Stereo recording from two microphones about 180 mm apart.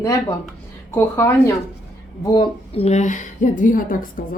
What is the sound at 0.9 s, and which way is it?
Speech, 10° left (ahead or behind).